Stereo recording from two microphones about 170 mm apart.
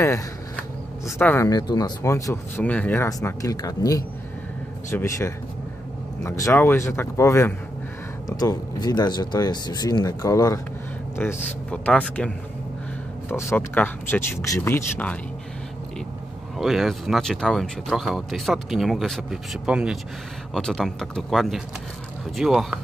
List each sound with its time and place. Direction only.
1.0 s speech: 15° left (ahead or behind)
13.3 s speech: 15° left (ahead or behind)
16.5 s speech: centre (ahead or behind)